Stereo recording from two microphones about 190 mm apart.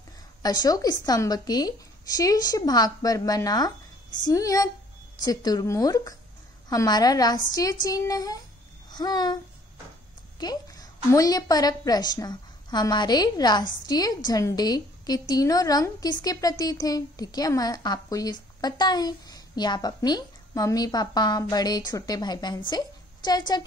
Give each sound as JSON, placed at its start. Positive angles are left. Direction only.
{"t": 0.4, "sound": "a woman's voice", "side_deg": 20}
{"t": 10.4, "sound": "a woman's voice", "side_deg": 20}